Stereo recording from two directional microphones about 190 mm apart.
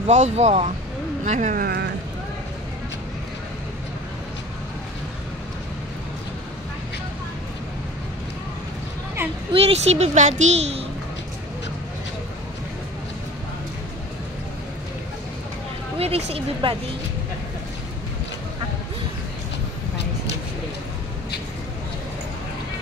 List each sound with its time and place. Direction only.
0.0 s a child's voice: 35° right (ahead or behind); by 1.9 s 50° right (ahead or behind)
9.5 s a child's voice: 30° right (ahead or behind)
16.0 s a child's voice: 30° right (ahead or behind)